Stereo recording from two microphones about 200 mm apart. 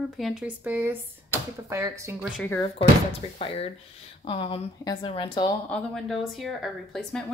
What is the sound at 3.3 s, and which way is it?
Speech, 30° left (ahead or behind).